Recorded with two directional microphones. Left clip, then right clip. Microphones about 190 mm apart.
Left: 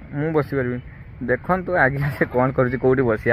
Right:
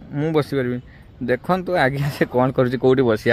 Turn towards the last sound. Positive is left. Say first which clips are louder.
# right 2 dB
turn(degrees=-30)  # may be behind; listen again after turning